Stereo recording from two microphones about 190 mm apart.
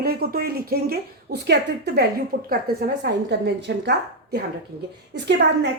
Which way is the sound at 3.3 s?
65° right (ahead or behind).